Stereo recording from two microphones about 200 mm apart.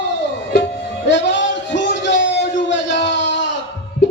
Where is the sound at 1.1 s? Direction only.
60° left (ahead or behind).